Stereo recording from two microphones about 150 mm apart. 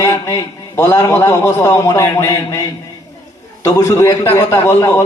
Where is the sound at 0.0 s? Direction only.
15° left (ahead or behind).